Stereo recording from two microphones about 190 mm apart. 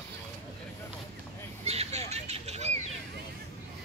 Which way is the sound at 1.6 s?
35° right (ahead or behind).